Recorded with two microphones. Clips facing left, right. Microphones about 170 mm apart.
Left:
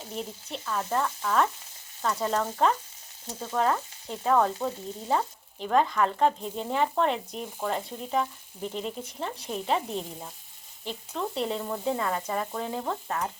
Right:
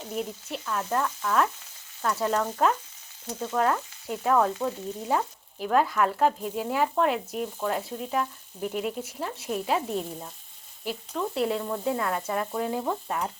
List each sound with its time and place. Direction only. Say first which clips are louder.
0.1 s frying: right 4 dB; 5° right (ahead or behind)